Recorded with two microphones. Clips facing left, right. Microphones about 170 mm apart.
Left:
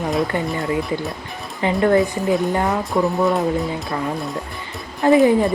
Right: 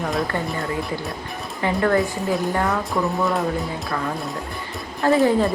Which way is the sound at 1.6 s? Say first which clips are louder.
Left 4 dB; 20° left (ahead or behind).